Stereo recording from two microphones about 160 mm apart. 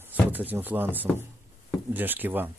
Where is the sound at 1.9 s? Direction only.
10° right (ahead or behind).